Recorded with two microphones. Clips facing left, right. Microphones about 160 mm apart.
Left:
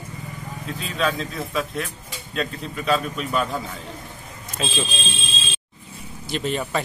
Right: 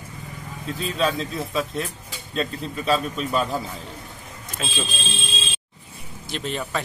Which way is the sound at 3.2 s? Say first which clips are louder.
Even; 30° right (ahead or behind).